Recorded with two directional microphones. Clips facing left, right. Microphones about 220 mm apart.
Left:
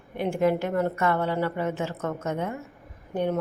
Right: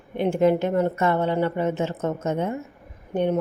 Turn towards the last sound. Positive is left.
turn(degrees=-20)  # may be behind; listen again after turning